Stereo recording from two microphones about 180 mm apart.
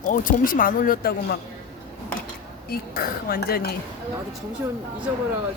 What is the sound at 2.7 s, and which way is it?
Speech, 60° left (ahead or behind).